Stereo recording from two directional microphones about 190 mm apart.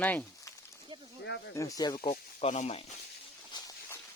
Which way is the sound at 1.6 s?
20° left (ahead or behind).